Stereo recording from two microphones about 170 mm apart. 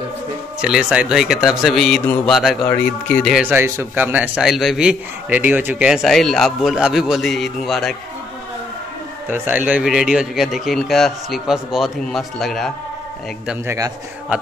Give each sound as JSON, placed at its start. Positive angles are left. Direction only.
{"t": 0.6, "sound": "a man's voice", "side_deg": -5}
{"t": 3.4, "sound": "a man's voice", "side_deg": -15}
{"t": 9.3, "sound": "a man's voice", "side_deg": -10}
{"t": 13.7, "sound": "a man's voice", "side_deg": -20}